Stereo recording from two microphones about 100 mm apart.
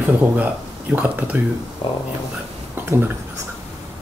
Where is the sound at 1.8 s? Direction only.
60° left (ahead or behind).